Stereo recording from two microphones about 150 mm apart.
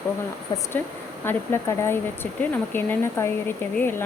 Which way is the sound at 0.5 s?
25° left (ahead or behind).